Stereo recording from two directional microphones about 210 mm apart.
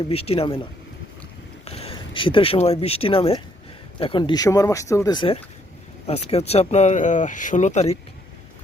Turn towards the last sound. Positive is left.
turn(degrees=30)  # may be behind; listen again after turning